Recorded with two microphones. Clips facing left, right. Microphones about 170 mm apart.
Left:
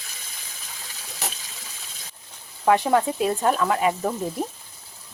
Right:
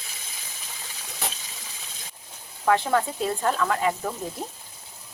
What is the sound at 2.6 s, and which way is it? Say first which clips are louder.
Speech: left 3 dB; 15° left (ahead or behind).